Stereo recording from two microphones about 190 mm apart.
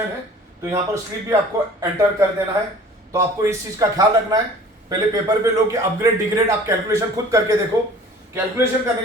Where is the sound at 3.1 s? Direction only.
15° right (ahead or behind).